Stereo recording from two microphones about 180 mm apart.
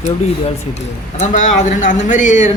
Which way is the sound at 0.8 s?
40° left (ahead or behind).